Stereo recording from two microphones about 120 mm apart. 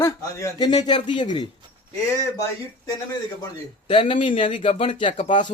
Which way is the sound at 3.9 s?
45° left (ahead or behind).